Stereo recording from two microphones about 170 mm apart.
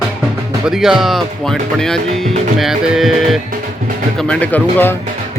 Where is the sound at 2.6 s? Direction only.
Centre (ahead or behind).